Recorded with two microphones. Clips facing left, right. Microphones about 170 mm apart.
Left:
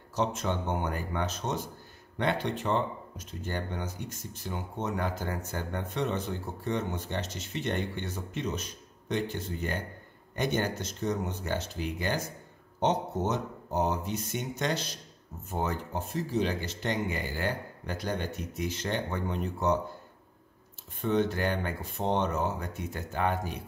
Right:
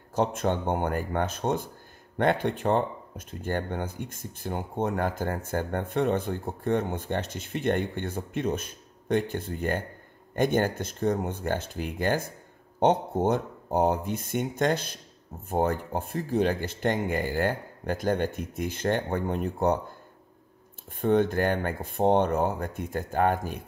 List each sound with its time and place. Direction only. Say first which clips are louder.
0.1 s speech: right 4 dB; 55° right (ahead or behind)
21.0 s speech: right 5 dB; 50° right (ahead or behind)